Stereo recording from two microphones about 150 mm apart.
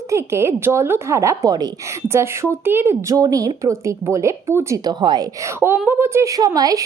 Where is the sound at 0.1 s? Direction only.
20° right (ahead or behind).